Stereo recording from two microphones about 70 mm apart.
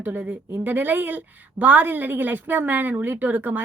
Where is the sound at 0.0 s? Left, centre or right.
Right.